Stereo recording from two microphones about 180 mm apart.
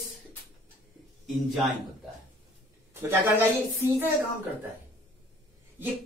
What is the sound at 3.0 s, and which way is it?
Speech, 15° right (ahead or behind).